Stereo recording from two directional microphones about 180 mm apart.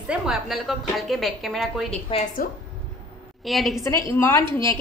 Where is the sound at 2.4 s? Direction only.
50° left (ahead or behind).